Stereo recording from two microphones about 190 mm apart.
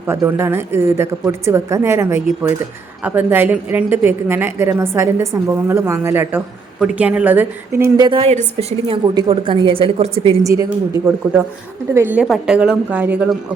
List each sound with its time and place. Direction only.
0.0 s a woman's voice: 10° right (ahead or behind); by 10.3 s 30° right (ahead or behind)
10.4 s a woman's voice: 15° right (ahead or behind)